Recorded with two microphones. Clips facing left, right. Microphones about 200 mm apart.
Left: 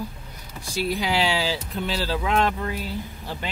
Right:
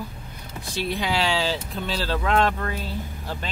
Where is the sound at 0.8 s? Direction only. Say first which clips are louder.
Left 1 dB; 10° left (ahead or behind).